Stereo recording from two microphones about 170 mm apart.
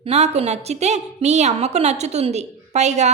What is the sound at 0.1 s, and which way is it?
A woman's voice, 40° right (ahead or behind).